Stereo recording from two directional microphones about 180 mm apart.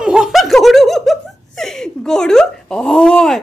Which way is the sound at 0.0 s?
5° right (ahead or behind).